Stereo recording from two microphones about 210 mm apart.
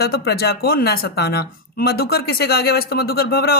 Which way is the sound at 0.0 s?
50° left (ahead or behind).